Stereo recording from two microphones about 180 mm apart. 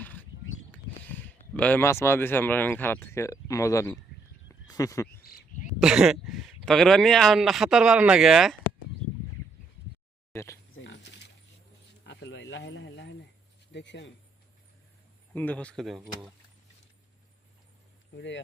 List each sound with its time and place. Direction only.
0.0 s a sound: 10° left (ahead or behind)
0.7 s speech: 10° left (ahead or behind)
4.4 s a sound: 20° left (ahead or behind)
5.0 s speech: 55° left (ahead or behind)
5.8 s speech: 5° right (ahead or behind)
10.3 s speech: 15° left (ahead or behind)
10.8 s a sound: 80° left
13.7 s speech: 80° left
15.3 s speech: 10° left (ahead or behind)